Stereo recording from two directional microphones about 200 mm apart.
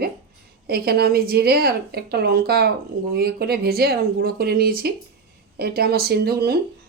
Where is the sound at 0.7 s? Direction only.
50° right (ahead or behind).